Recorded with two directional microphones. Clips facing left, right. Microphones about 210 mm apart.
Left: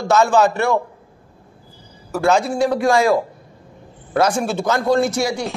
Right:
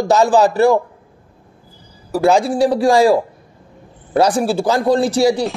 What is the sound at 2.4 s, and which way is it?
Speech, 35° right (ahead or behind).